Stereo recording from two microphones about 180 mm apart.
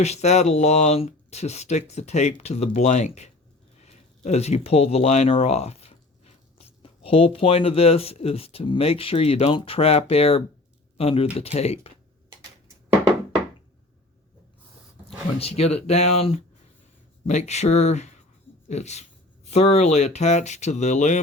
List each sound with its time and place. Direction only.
0.0 s speech: 40° left (ahead or behind)
15.4 s speech: 35° left (ahead or behind)